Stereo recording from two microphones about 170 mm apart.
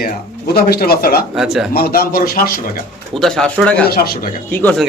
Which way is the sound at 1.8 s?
60° left (ahead or behind).